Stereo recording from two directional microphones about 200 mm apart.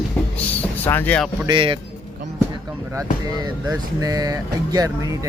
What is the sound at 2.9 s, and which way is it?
Speech, 20° right (ahead or behind).